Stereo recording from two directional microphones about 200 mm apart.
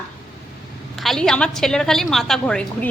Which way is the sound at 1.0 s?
Centre (ahead or behind).